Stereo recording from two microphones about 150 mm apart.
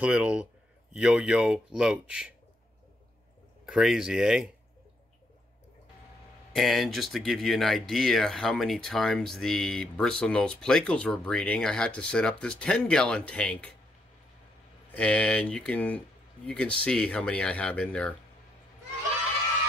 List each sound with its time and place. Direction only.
0.0 s speech: 5° right (ahead or behind)
3.6 s speech: 5° right (ahead or behind)
6.5 s speech: centre (ahead or behind)
14.9 s speech: 10° left (ahead or behind)